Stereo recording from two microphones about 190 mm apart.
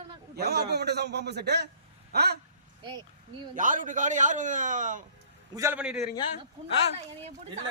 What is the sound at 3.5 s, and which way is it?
A man's voice, 45° right (ahead or behind).